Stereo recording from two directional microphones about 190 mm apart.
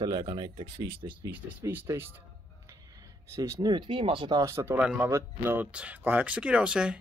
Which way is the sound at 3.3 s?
15° right (ahead or behind).